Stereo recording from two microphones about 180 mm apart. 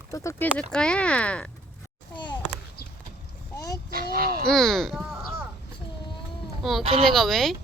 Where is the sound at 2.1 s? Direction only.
25° left (ahead or behind).